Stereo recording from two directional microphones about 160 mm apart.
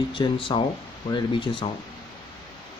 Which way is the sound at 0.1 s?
30° left (ahead or behind).